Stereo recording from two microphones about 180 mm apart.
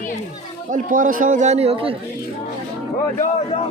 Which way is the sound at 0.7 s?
45° right (ahead or behind).